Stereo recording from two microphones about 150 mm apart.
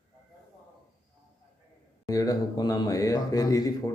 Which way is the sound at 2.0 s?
25° left (ahead or behind).